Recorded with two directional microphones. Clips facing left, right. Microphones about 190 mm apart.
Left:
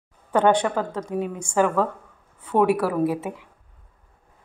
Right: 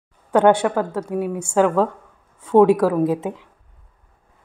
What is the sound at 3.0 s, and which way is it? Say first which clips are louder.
Speech: right 3 dB; 20° right (ahead or behind).